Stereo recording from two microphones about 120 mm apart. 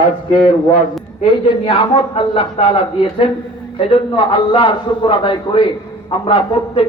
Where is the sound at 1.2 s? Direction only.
50° left (ahead or behind).